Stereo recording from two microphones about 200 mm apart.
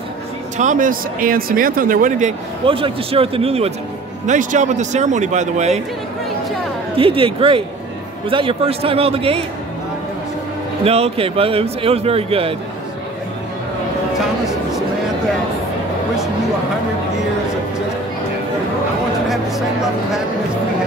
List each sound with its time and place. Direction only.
0.6 s speech: 40° right (ahead or behind)
2.6 s a man's voice: 25° right (ahead or behind)
7.0 s a man's voice: 25° right (ahead or behind)
10.8 s a man's voice: 30° right (ahead or behind)
19.2 s a sound: centre (ahead or behind)